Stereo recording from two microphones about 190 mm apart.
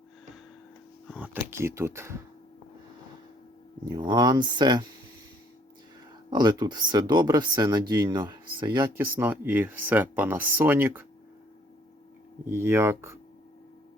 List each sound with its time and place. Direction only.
1.1 s speech: 10° right (ahead or behind)
3.8 s speech: 20° right (ahead or behind)
6.3 s speech: 20° right (ahead or behind)
9.0 s speech: 10° right (ahead or behind)
12.5 s speech: 10° right (ahead or behind)